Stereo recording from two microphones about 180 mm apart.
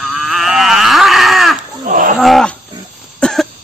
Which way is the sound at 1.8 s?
45° right (ahead or behind).